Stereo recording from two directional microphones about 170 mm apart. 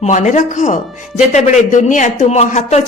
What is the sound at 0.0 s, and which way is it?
A woman's voice, 45° left (ahead or behind).